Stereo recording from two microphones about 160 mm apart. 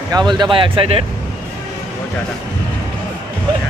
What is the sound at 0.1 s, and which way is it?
Speech, 25° right (ahead or behind).